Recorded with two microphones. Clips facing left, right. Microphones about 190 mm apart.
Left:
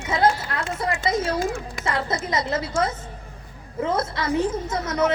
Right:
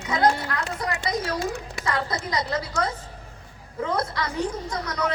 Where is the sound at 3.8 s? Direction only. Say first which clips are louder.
Left 2 dB; 25° left (ahead or behind).